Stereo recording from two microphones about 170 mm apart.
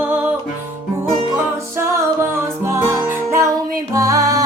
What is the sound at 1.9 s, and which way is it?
Music, 15° right (ahead or behind).